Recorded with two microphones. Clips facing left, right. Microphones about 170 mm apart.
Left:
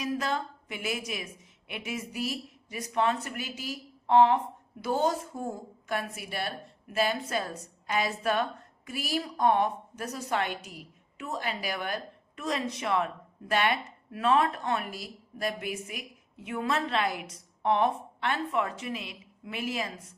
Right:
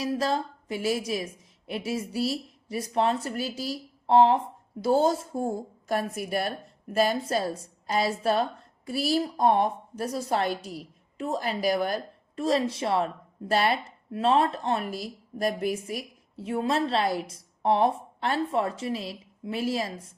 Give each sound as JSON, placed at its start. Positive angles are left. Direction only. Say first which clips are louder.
{"t": 0.0, "sound": "a woman's voice", "louder": "right 4 dB", "side_deg": -30}
{"t": 5.9, "sound": "a woman's voice", "louder": "right 6 dB", "side_deg": -40}